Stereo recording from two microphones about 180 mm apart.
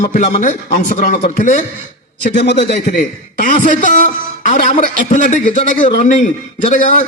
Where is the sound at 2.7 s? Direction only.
50° left (ahead or behind).